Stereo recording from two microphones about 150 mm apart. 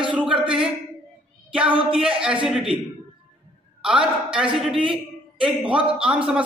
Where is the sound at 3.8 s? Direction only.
5° right (ahead or behind).